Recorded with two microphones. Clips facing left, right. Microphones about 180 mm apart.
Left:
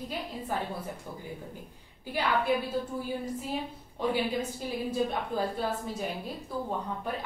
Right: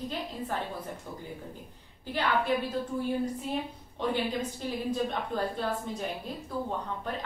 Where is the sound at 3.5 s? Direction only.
5° left (ahead or behind).